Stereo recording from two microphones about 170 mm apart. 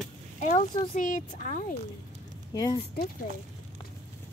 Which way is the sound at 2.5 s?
25° left (ahead or behind).